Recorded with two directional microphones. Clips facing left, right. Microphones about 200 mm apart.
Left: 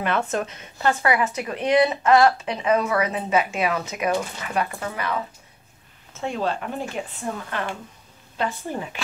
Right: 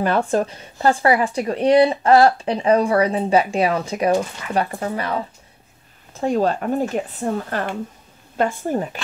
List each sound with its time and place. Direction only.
0.0 s speech: 35° right (ahead or behind)